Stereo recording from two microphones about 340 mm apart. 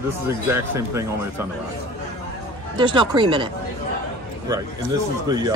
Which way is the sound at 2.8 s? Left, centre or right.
Centre.